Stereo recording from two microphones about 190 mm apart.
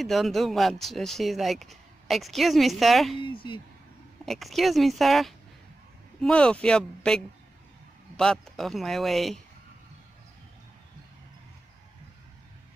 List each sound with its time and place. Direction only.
0.0 s speech: centre (ahead or behind)
3.2 s speech: 25° left (ahead or behind)
4.3 s speech: centre (ahead or behind)